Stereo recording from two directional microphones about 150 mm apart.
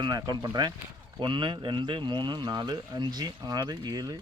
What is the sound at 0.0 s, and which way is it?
Speech, 30° right (ahead or behind).